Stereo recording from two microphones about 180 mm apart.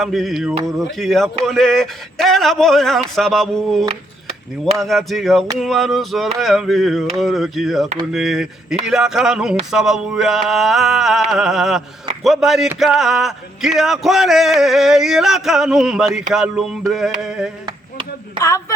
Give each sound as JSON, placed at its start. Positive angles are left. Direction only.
{"t": 0.0, "sound": "speech", "side_deg": 0}
{"t": 18.3, "sound": "a man's voice", "side_deg": 15}